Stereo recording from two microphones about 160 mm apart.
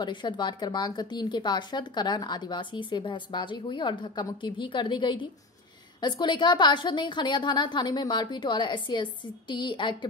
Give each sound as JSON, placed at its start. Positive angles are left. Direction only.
{"t": 0.0, "sound": "a woman's voice", "side_deg": 30}